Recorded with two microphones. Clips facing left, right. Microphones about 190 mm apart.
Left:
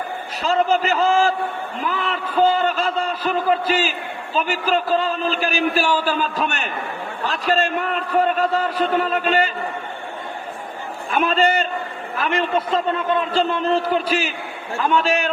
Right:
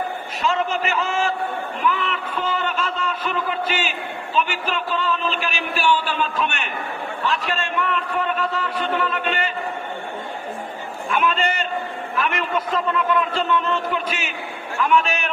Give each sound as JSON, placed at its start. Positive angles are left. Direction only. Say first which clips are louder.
{"t": 0.4, "sound": "a man's voice", "louder": "left 4 dB", "side_deg": 35}
{"t": 1.8, "sound": "a sound", "louder": "right 1 dB", "side_deg": 35}
{"t": 4.4, "sound": "a man's voice", "louder": "left 3 dB", "side_deg": 35}
{"t": 11.1, "sound": "a man's voice", "louder": "left 4 dB", "side_deg": 35}